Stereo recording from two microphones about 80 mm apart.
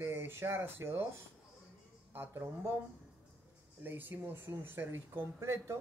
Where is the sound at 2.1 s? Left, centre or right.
Right.